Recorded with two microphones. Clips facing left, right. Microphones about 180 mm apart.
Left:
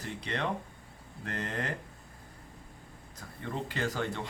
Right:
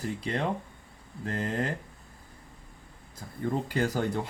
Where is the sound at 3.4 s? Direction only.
40° right (ahead or behind).